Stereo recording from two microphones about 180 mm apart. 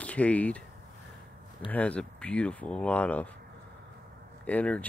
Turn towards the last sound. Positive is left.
turn(degrees=5)  # may be behind; listen again after turning